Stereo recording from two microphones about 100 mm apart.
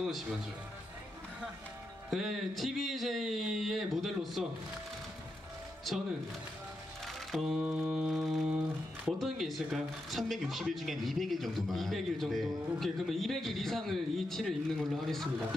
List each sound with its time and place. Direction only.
0.0 s speech: 5° right (ahead or behind)
2.0 s speech: centre (ahead or behind)
7.6 s music: 15° right (ahead or behind)
7.9 s speech: 5° right (ahead or behind)